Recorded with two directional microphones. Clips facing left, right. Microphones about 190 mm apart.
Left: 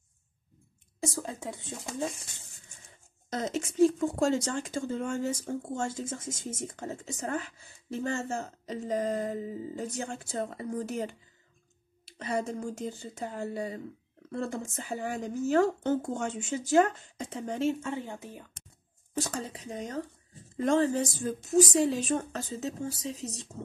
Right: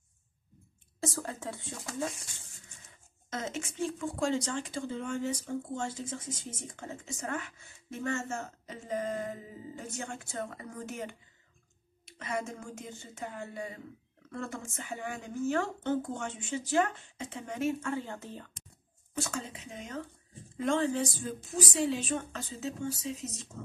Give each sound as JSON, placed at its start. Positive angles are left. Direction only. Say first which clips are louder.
{"t": 1.0, "sound": "speech", "louder": "left 1 dB", "side_deg": 15}
{"t": 2.9, "sound": "speech", "louder": "left 4 dB", "side_deg": 35}
{"t": 19.1, "sound": "speech", "louder": "left 3 dB", "side_deg": 35}